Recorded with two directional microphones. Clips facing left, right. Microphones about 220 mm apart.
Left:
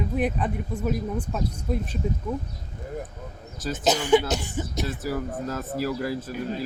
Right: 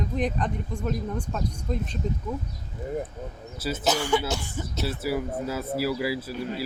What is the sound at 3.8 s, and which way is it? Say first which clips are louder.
Speech: left 5 dB; 20° left (ahead or behind).